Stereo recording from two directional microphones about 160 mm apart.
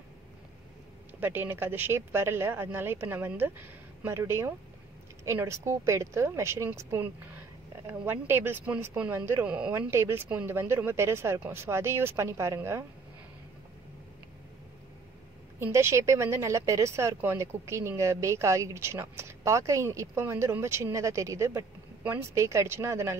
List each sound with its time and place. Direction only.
1.2 s speech: 15° right (ahead or behind)
15.6 s speech: 15° right (ahead or behind)